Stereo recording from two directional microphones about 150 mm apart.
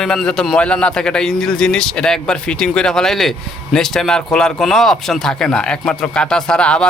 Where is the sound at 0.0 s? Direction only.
5° left (ahead or behind).